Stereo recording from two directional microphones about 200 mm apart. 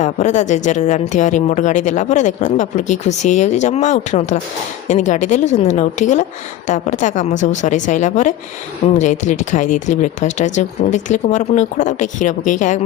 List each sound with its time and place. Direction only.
0.0 s a woman's voice: 35° left (ahead or behind)